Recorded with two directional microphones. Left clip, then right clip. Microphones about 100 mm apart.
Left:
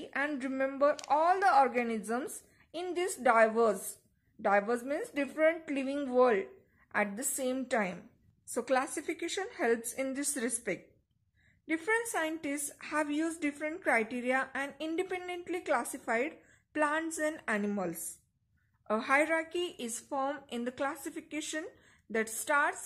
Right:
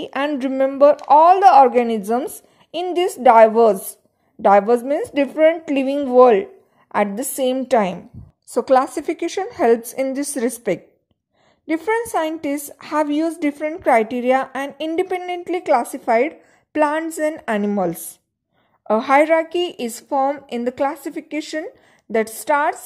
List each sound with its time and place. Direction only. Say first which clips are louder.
0.0 s speech: right 12 dB; 50° right (ahead or behind)
0.6 s a woman's voice: right 16 dB; 35° right (ahead or behind)
4.4 s a woman's voice: right 16 dB; 40° right (ahead or behind)
8.5 s a woman's voice: right 16 dB; 30° right (ahead or behind)
11.6 s a woman's voice: right 11 dB; 25° right (ahead or behind)
13.8 s a woman's voice: right 15 dB; 35° right (ahead or behind)
18.9 s a woman's voice: right 15 dB; 40° right (ahead or behind)